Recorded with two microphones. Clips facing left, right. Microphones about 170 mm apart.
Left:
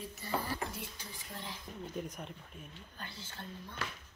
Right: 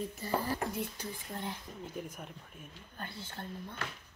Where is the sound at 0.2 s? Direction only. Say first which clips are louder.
Right 2 dB; 50° right (ahead or behind).